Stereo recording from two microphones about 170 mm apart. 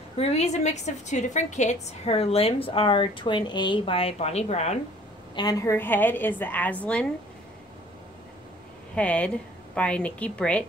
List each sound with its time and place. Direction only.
0.2 s a woman's voice: 40° left (ahead or behind)
5.3 s a woman's voice: 25° left (ahead or behind); by 7.1 s 10° left (ahead or behind)
8.9 s a woman's voice: 5° left (ahead or behind)